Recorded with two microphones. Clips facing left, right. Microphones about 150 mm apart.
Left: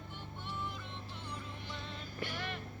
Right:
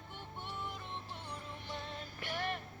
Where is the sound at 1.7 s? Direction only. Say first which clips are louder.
Right 2 dB; 50° right (ahead or behind).